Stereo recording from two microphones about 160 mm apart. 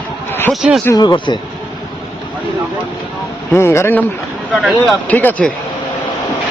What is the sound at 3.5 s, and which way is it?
Speech, 15° left (ahead or behind).